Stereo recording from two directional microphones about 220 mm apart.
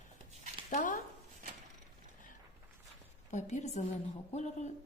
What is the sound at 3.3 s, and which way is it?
A woman's voice, 30° left (ahead or behind).